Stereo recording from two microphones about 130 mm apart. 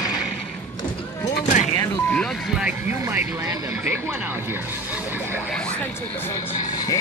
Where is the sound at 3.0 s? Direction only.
15° right (ahead or behind).